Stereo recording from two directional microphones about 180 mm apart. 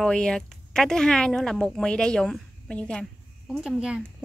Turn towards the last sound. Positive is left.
turn(degrees=-5)  # may be behind; listen again after turning